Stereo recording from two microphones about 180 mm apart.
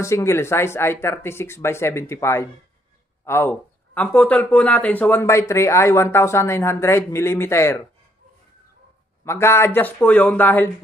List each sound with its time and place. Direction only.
0.0 s speech: 15° left (ahead or behind)
9.2 s speech: 15° left (ahead or behind)